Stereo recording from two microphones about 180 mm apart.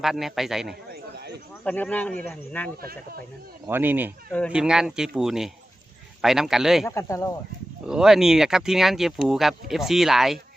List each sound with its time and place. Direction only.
0.0 s speech: centre (ahead or behind)
1.6 s speech: 10° left (ahead or behind)
3.7 s speech: 10° right (ahead or behind)
4.3 s speech: 10° left (ahead or behind)
4.5 s speech: 5° right (ahead or behind)
6.8 s speech: 15° left (ahead or behind)
7.9 s speech: 5° right (ahead or behind)